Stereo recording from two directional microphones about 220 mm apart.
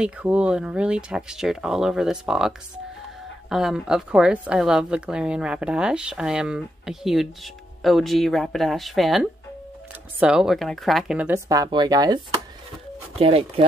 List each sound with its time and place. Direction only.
0.0 s a woman's voice: 5° right (ahead or behind)
13.2 s speech: 25° right (ahead or behind)